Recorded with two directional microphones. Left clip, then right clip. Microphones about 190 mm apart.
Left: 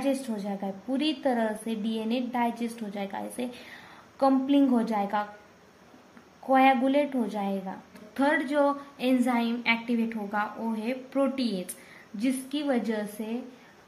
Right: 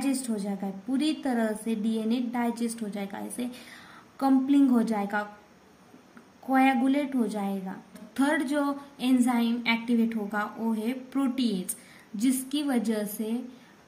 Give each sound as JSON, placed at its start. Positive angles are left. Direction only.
{"t": 0.0, "sound": "a woman's voice", "side_deg": -15}
{"t": 6.5, "sound": "a woman's voice", "side_deg": -15}